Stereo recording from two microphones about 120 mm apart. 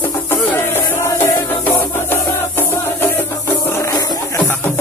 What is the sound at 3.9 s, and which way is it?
Music, 30° left (ahead or behind).